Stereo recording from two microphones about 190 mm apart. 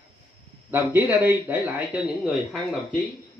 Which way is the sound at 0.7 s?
10° right (ahead or behind).